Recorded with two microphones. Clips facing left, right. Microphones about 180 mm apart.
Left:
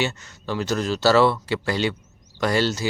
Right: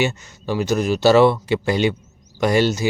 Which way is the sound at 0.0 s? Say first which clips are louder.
Right 4 dB; 15° right (ahead or behind).